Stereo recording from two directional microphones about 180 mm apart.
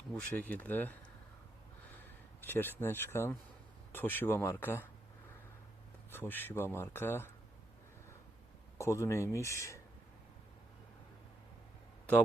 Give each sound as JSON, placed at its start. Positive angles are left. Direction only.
{"t": 0.3, "sound": "speech", "side_deg": 10}
{"t": 2.4, "sound": "speech", "side_deg": 10}
{"t": 6.1, "sound": "speech", "side_deg": 10}
{"t": 8.8, "sound": "speech", "side_deg": 15}